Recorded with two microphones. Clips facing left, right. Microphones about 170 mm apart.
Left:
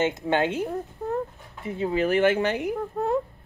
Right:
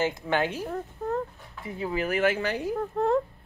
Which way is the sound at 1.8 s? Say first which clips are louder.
Left 4 dB; 30° left (ahead or behind).